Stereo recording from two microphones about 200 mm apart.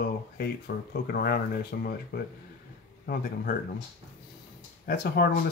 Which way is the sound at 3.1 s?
50° left (ahead or behind).